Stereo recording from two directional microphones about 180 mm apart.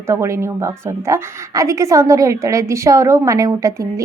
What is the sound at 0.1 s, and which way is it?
A woman's voice, 15° right (ahead or behind).